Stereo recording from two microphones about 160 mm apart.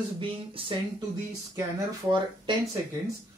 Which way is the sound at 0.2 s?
35° right (ahead or behind).